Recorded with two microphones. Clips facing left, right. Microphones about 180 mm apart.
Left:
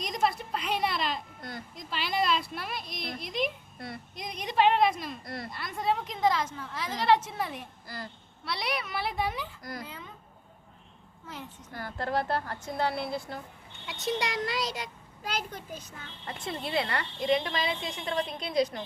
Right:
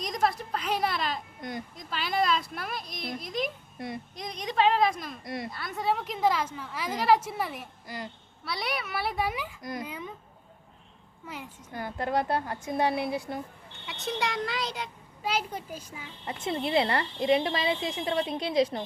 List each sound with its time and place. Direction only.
0.1 s a child's voice: centre (ahead or behind)
1.4 s a child's voice: 20° right (ahead or behind)
2.0 s a child's voice: centre (ahead or behind)
3.8 s a woman's voice: 20° right (ahead or behind)
4.1 s a child's voice: 5° left (ahead or behind)
5.2 s a woman's voice: 15° right (ahead or behind)
5.5 s a woman's voice: centre (ahead or behind)
7.9 s a woman's voice: 20° right (ahead or behind)
8.4 s a child's voice: centre (ahead or behind)
11.3 s a woman's voice: 15° right (ahead or behind)
14.0 s a child's voice: centre (ahead or behind)
16.2 s a woman's voice: 20° right (ahead or behind)